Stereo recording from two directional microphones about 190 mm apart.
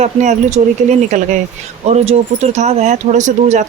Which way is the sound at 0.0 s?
35° right (ahead or behind).